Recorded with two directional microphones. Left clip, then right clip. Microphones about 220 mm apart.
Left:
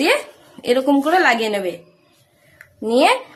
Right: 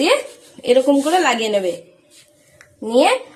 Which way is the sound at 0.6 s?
10° left (ahead or behind).